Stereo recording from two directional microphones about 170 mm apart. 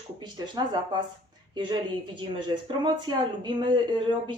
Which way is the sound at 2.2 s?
25° right (ahead or behind).